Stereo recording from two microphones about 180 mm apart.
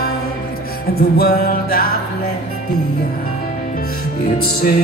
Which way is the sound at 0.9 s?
55° left (ahead or behind).